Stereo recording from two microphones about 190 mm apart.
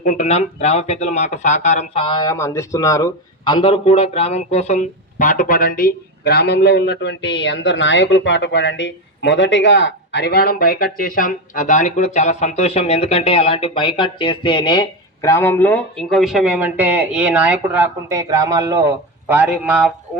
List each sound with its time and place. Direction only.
0.0 s speech: 40° left (ahead or behind); by 19.9 s 5° right (ahead or behind)